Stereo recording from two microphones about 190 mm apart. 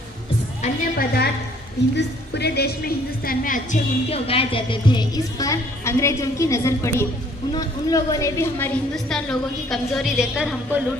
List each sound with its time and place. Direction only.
0.6 s a woman's voice: 55° left (ahead or behind); by 10.8 s 5° right (ahead or behind)